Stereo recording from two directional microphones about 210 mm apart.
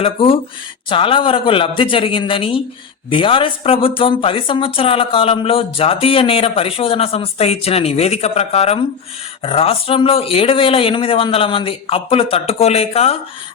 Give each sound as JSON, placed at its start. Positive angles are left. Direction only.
{"t": 0.0, "sound": "speech", "side_deg": 25}